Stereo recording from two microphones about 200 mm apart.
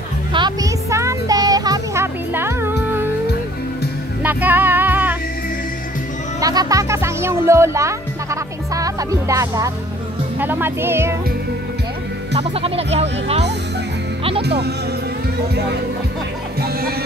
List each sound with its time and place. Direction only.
0.3 s a sound: 20° right (ahead or behind)
4.2 s music: 10° right (ahead or behind)
6.4 s music: 20° right (ahead or behind)
10.4 s speech: 10° right (ahead or behind)
12.4 s speech: 30° right (ahead or behind)
14.4 s speech: 55° right (ahead or behind)